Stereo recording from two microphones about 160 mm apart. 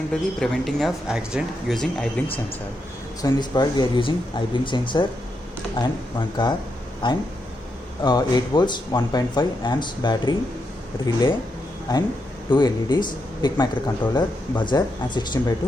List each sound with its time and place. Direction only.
0.3 s speech: centre (ahead or behind)
3.2 s speech: 25° left (ahead or behind)